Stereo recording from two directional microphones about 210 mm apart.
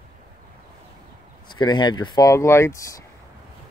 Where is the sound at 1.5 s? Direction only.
20° left (ahead or behind).